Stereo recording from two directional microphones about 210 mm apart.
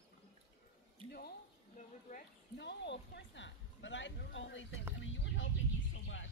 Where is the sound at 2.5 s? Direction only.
55° left (ahead or behind).